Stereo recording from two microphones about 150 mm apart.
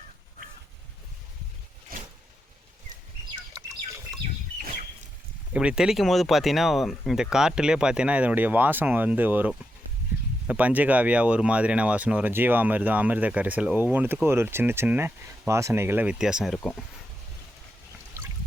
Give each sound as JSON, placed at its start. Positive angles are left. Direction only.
{"t": 1.9, "sound": "a sound", "side_deg": -75}
{"t": 3.5, "sound": "bird", "side_deg": -20}
{"t": 5.5, "sound": "speech", "side_deg": -5}